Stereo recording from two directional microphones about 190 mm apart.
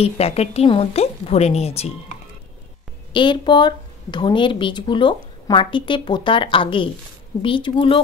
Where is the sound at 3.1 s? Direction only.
25° left (ahead or behind).